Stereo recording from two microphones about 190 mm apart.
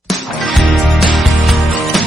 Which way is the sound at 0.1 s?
Centre (ahead or behind).